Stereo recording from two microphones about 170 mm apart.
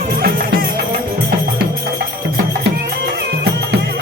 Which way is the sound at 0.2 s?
60° right (ahead or behind).